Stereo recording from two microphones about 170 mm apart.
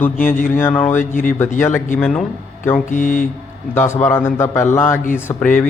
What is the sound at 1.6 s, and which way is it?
A man's voice, 10° left (ahead or behind).